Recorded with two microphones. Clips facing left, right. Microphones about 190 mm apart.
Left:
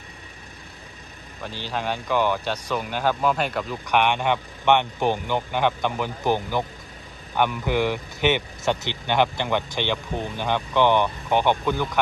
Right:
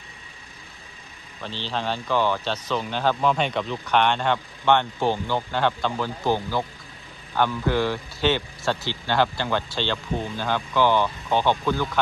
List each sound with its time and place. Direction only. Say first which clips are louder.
1.4 s speech: even; 10° left (ahead or behind)